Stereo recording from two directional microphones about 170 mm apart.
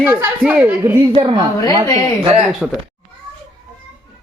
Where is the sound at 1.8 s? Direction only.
20° left (ahead or behind).